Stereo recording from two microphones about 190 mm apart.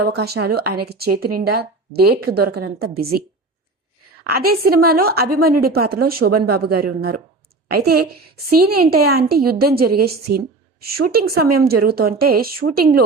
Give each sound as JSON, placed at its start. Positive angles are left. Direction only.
{"t": 0.1, "sound": "speech", "side_deg": -55}
{"t": 4.4, "sound": "a woman's voice", "side_deg": -50}
{"t": 8.4, "sound": "a woman's voice", "side_deg": -55}